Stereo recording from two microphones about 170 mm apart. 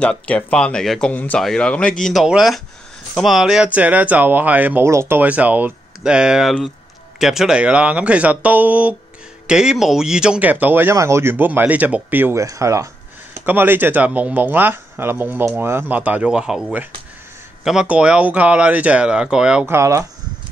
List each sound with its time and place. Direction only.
0.0 s speech: 5° left (ahead or behind)
19.6 s speech: 15° right (ahead or behind)